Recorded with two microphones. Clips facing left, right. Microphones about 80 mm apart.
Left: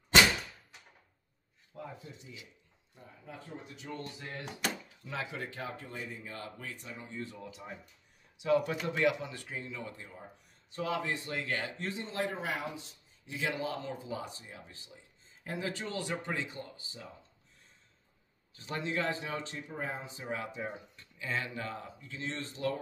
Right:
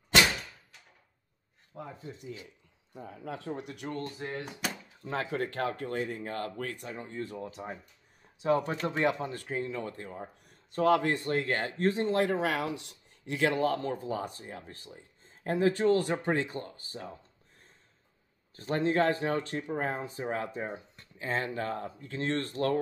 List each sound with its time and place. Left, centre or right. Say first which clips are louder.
1.7 s speech: right 2 dB; right
3.1 s speech: right 9 dB; right
4.0 s speech: right 6 dB; right
4.5 s speech: even; centre
5.0 s speech: right 7 dB; right
18.5 s speech: right 8 dB; right